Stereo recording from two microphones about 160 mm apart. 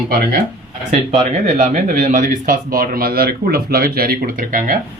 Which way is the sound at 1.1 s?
45° right (ahead or behind).